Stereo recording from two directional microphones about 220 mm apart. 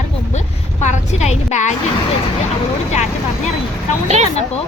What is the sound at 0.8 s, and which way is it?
Speech, 30° left (ahead or behind).